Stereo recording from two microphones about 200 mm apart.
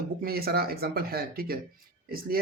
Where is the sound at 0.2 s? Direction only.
50° right (ahead or behind).